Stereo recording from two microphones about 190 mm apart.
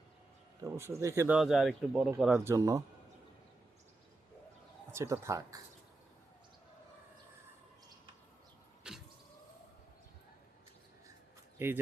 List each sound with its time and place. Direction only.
0.6 s speech: 15° right (ahead or behind)
1.4 s speech: centre (ahead or behind)
4.9 s speech: 15° right (ahead or behind)
8.9 s power windows: 5° right (ahead or behind)
11.6 s speech: 10° right (ahead or behind)